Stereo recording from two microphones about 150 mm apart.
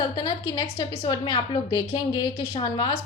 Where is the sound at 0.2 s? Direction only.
30° left (ahead or behind).